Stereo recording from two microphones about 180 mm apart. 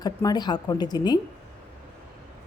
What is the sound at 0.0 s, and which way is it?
A woman's voice, 20° left (ahead or behind).